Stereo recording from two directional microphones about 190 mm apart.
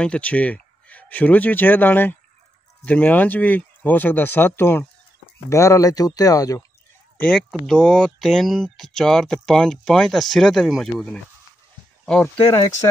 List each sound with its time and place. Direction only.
0.0 s speech: 5° left (ahead or behind)
7.2 s speech: 5° left (ahead or behind)